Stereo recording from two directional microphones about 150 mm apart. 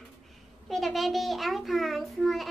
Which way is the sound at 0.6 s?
Centre (ahead or behind).